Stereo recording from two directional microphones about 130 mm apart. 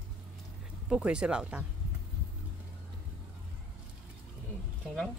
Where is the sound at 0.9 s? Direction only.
5° right (ahead or behind).